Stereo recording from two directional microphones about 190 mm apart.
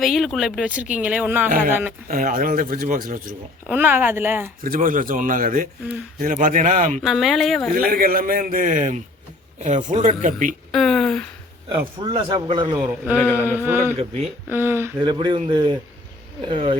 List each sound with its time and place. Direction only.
0.0 s speech: centre (ahead or behind)
1.5 s speech: 45° right (ahead or behind)
3.7 s speech: 10° right (ahead or behind)
4.6 s speech: 45° right (ahead or behind)
7.0 s speech: centre (ahead or behind)
7.7 s speech: 50° right (ahead or behind)
10.7 s speech: centre (ahead or behind)
11.9 s a man's voice: 25° right (ahead or behind)
13.3 s speech: 10° right (ahead or behind)
13.9 s speech: 35° right (ahead or behind)
14.5 s speech: 10° right (ahead or behind)
15.0 s a man's voice: 25° right (ahead or behind)